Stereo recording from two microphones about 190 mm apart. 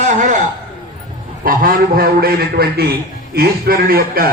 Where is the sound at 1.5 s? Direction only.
50° right (ahead or behind).